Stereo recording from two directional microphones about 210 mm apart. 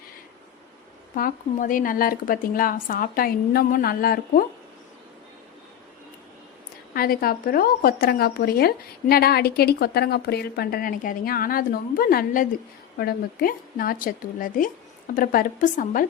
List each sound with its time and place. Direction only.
1.1 s speech: 40° left (ahead or behind)
6.9 s speech: 45° left (ahead or behind)